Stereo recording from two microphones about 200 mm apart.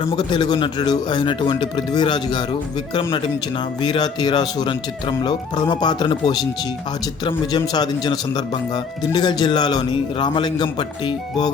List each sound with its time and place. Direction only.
0.2 s speech: 20° left (ahead or behind)